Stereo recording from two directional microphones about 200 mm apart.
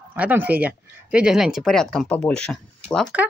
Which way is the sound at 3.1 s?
5° right (ahead or behind).